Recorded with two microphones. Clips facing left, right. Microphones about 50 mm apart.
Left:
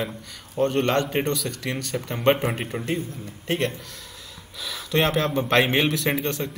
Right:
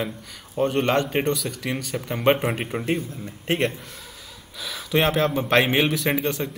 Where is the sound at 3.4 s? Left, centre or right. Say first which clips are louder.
Right 2 dB; right.